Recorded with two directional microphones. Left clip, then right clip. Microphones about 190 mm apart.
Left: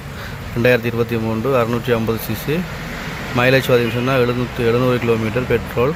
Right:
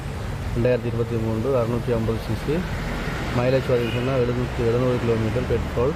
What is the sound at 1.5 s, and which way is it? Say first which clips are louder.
Speech: left 6 dB; 10° left (ahead or behind).